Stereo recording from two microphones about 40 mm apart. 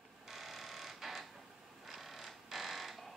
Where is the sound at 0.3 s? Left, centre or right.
Centre.